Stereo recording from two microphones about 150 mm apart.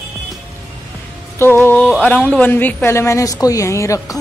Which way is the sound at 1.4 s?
15° left (ahead or behind).